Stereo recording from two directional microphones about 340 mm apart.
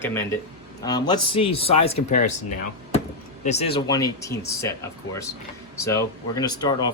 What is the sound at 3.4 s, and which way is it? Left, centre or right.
Speech, centre.